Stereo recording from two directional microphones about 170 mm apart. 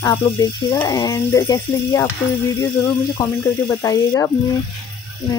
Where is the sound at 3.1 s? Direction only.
20° left (ahead or behind).